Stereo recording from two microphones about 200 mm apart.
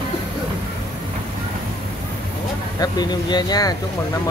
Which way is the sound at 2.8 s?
20° left (ahead or behind).